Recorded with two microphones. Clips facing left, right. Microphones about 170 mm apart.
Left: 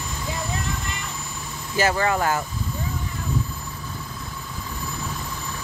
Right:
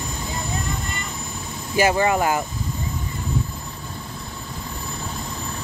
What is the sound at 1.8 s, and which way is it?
Speech, 15° right (ahead or behind).